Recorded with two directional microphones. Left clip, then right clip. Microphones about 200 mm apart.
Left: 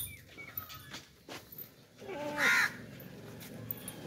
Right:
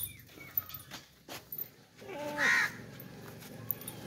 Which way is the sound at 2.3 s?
40° left (ahead or behind).